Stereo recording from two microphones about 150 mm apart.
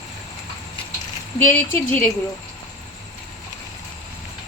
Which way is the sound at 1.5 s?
10° left (ahead or behind).